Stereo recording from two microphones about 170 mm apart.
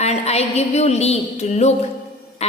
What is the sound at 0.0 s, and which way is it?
Music, 40° left (ahead or behind).